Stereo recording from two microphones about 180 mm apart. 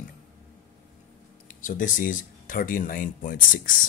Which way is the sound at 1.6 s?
50° left (ahead or behind).